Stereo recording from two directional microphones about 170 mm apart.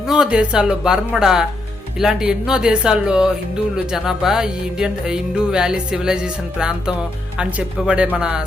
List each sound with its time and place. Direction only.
0.1 s music: 5° right (ahead or behind)
7.9 s speech: 5° right (ahead or behind)